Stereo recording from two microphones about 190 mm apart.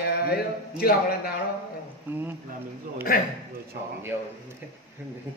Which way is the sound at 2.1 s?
10° right (ahead or behind).